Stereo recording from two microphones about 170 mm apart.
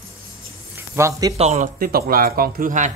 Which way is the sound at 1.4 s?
40° right (ahead or behind).